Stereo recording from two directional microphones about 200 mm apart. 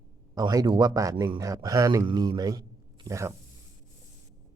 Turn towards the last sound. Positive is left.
turn(degrees=-15)  # may be behind; listen again after turning